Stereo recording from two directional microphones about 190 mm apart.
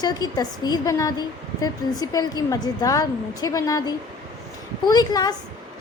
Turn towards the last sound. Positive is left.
turn(degrees=20)  # may be behind; listen again after turning